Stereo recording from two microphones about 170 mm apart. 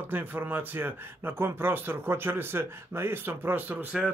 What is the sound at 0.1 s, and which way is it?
Speech, 10° right (ahead or behind).